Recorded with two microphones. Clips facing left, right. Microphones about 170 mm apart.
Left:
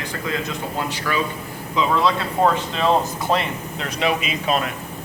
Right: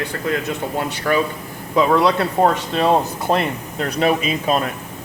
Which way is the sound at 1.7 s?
60° right (ahead or behind).